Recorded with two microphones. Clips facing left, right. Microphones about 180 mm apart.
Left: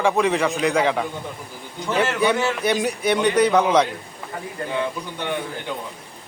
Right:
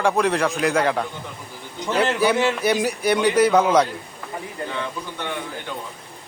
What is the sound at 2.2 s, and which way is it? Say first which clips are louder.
A man's voice: right 1 dB; centre (ahead or behind).